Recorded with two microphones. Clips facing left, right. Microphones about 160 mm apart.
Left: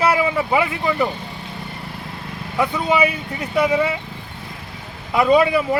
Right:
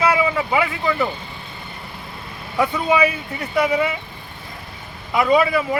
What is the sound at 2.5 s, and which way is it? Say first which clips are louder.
Speech: even; centre (ahead or behind).